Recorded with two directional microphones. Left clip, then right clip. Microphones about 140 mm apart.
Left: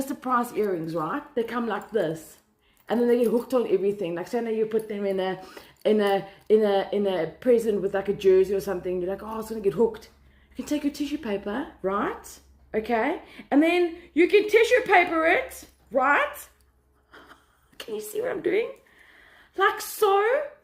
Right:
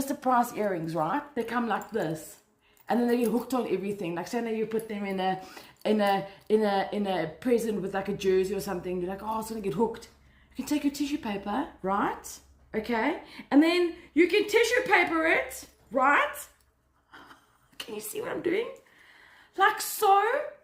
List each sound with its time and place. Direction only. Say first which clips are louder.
0.1 s speech: right 2 dB; 25° right (ahead or behind)
2.8 s a woman's voice: left 4 dB; 35° right (ahead or behind)
17.1 s a sound: left 1 dB; 25° right (ahead or behind)
17.7 s speech: left 5 dB; 25° right (ahead or behind)